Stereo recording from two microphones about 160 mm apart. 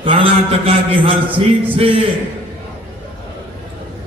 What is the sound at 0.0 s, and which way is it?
Mantra, 30° right (ahead or behind).